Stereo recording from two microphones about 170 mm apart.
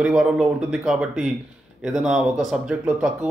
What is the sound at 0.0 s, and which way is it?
A man's voice, 5° right (ahead or behind).